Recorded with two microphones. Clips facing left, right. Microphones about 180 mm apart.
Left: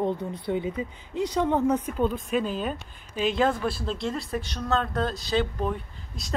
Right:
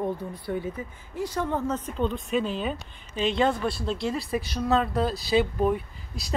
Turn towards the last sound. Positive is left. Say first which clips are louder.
# right 1 dB
turn(degrees=-5)  # may be behind; listen again after turning